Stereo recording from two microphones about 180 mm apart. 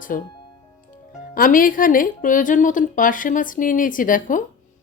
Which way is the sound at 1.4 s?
50° left (ahead or behind).